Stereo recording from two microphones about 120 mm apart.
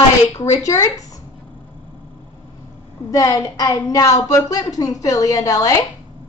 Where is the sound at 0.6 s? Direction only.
25° left (ahead or behind).